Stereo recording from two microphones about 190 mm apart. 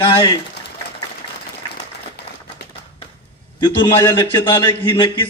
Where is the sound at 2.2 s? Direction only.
60° left (ahead or behind).